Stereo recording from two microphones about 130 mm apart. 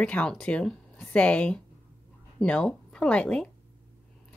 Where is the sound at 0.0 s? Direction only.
10° left (ahead or behind).